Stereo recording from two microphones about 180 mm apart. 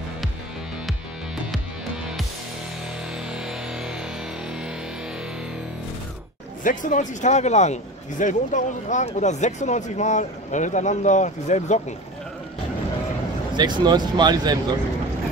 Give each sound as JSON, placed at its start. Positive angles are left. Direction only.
{"t": 3.3, "sound": "music", "side_deg": -5}
{"t": 6.6, "sound": "speech", "side_deg": 45}
{"t": 13.6, "sound": "speech", "side_deg": -25}